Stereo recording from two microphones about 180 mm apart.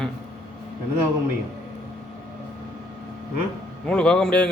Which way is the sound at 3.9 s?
5° left (ahead or behind).